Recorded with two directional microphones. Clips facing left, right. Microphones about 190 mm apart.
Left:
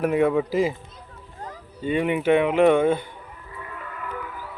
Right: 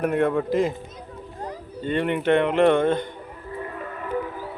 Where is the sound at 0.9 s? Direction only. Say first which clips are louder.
Right 7 dB; 40° right (ahead or behind).